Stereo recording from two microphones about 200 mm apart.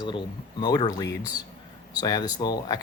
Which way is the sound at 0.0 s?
20° left (ahead or behind).